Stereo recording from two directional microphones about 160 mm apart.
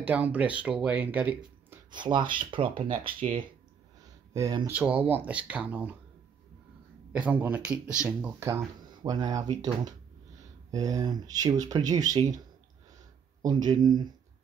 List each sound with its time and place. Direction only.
0.0 s speech: 10° right (ahead or behind)
1.9 s speech: 30° right (ahead or behind)
4.7 s speech: 10° right (ahead or behind)
7.1 s speech: 10° right (ahead or behind)
8.4 s speech: 15° right (ahead or behind)
13.4 s speech: 25° right (ahead or behind)